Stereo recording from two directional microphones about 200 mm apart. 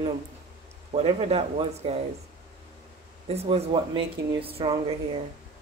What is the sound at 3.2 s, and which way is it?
Speech, 30° right (ahead or behind).